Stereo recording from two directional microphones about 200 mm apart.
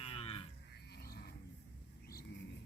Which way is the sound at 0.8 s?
55° left (ahead or behind).